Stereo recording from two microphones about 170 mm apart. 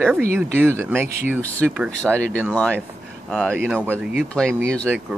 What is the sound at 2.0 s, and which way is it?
Speech, 5° left (ahead or behind).